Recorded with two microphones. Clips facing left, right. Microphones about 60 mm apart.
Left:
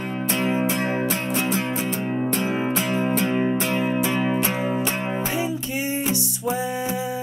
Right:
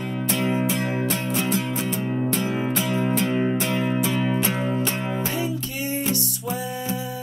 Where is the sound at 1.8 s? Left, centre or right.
Centre.